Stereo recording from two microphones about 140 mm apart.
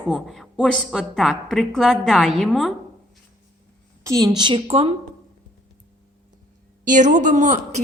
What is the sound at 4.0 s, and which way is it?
Speech, 25° right (ahead or behind).